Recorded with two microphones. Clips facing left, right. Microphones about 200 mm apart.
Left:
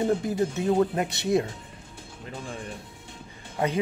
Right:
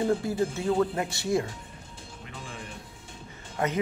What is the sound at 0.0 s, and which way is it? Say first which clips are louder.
Speech: left 1 dB; 20° left (ahead or behind).